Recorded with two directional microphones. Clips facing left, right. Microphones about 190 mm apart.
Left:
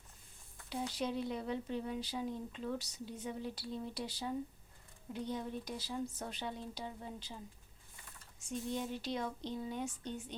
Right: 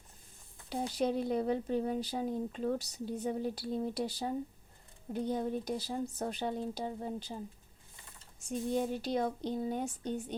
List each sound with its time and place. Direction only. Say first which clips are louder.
0.7 s speech: right 6 dB; 40° right (ahead or behind)
8.4 s speech: right 6 dB; 45° right (ahead or behind)